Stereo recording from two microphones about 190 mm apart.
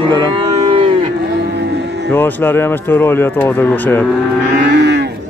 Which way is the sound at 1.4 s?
60° right (ahead or behind).